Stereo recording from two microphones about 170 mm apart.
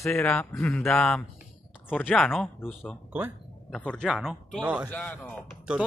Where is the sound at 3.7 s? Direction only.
5° left (ahead or behind).